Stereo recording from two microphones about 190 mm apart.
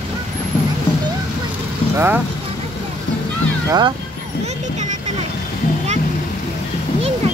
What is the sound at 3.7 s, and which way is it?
Speech, 25° right (ahead or behind).